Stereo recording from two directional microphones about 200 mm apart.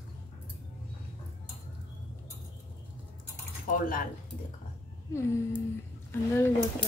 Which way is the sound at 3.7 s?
45° left (ahead or behind).